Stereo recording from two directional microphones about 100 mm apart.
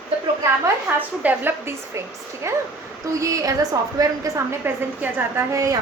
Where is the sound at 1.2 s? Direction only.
20° right (ahead or behind); by 4.4 s 35° right (ahead or behind).